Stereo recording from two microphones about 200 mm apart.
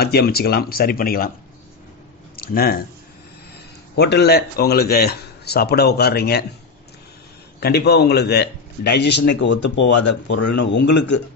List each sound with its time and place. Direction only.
0.0 s a man's voice: 50° left (ahead or behind)
2.3 s speech: 50° left (ahead or behind)
3.9 s a man's voice: 55° left (ahead or behind)
7.6 s speech: 55° left (ahead or behind)